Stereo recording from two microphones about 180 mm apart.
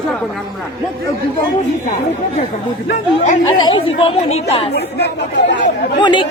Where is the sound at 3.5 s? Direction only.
25° left (ahead or behind).